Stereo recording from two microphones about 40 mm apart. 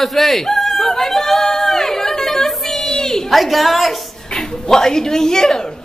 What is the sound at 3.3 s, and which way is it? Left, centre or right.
Speech, centre.